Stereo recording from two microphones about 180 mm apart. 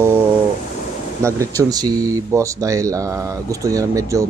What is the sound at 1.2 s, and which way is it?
Speech, 15° right (ahead or behind).